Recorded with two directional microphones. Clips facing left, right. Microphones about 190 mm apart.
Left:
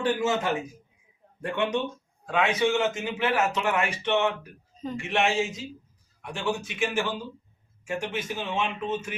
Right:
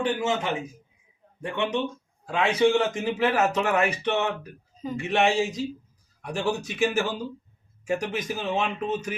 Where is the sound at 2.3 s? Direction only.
35° right (ahead or behind).